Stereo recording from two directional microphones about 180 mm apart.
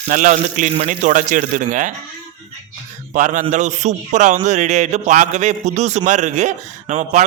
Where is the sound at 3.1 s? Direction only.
45° right (ahead or behind).